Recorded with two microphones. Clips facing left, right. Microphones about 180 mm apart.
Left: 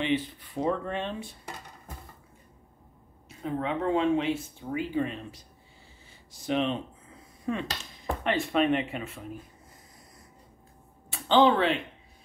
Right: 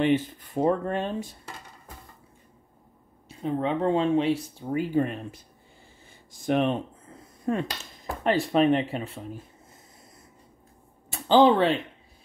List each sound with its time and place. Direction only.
0.0 s speech: 45° right (ahead or behind)
3.3 s speech: 30° right (ahead or behind); by 5.4 s 50° right (ahead or behind)
6.4 s speech: 50° right (ahead or behind); by 9.4 s 30° right (ahead or behind)
11.1 s a sound: 35° right (ahead or behind)